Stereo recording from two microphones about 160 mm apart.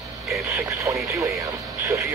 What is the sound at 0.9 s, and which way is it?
Speech, 20° right (ahead or behind).